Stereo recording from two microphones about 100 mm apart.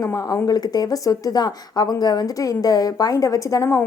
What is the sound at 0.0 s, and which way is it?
A woman's voice, 30° left (ahead or behind).